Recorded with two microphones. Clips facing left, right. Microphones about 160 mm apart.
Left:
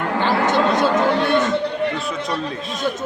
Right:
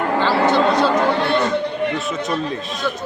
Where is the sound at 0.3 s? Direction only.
20° left (ahead or behind).